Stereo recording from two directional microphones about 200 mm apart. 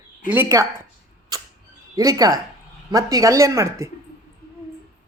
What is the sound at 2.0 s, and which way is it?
Speech, 20° right (ahead or behind).